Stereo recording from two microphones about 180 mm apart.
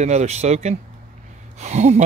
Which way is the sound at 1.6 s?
40° right (ahead or behind).